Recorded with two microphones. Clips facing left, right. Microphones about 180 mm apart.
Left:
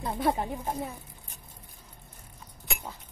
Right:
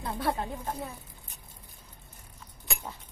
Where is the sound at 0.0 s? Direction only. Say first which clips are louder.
Left 3 dB; 15° left (ahead or behind).